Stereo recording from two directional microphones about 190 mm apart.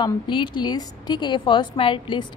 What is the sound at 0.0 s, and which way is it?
A woman's voice, 25° left (ahead or behind).